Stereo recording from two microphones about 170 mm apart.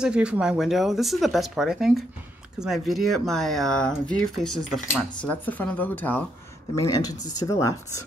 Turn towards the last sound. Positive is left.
turn(degrees=20)  # may be behind; listen again after turning